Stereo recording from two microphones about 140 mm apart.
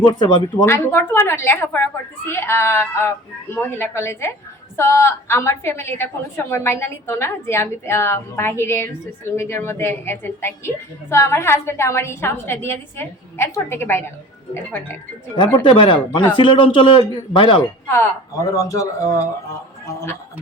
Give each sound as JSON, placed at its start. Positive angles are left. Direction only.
{"t": 0.1, "sound": "speech", "side_deg": 30}
{"t": 0.6, "sound": "a woman's voice", "side_deg": 20}
{"t": 15.6, "sound": "speech", "side_deg": 35}
{"t": 17.8, "sound": "speech", "side_deg": 15}